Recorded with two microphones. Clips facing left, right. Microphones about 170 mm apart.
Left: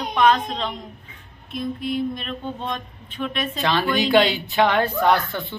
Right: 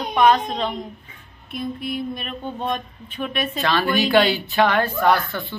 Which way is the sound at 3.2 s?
10° right (ahead or behind).